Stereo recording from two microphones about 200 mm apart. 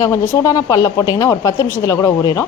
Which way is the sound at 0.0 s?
15° left (ahead or behind).